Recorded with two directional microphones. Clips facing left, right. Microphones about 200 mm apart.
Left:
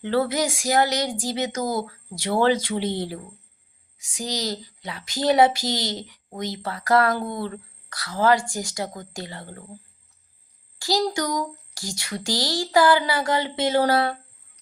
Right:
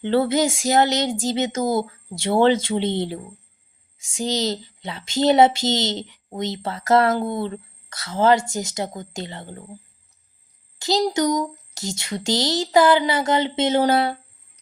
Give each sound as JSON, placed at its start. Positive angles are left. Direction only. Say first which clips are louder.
{"t": 0.0, "sound": "speech", "louder": "right 4 dB", "side_deg": -25}
{"t": 10.8, "sound": "speech", "louder": "right 3 dB", "side_deg": -20}